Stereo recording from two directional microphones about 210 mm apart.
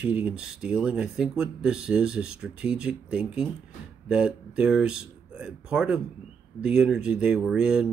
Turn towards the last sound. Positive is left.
turn(degrees=-5)  # may be behind; listen again after turning